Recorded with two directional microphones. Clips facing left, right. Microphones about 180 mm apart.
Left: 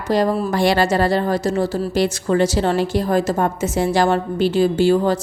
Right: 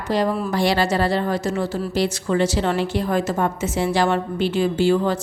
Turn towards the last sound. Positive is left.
turn(degrees=40)  # may be behind; listen again after turning